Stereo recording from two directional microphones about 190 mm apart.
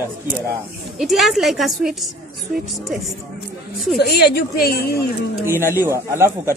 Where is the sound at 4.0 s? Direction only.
55° left (ahead or behind).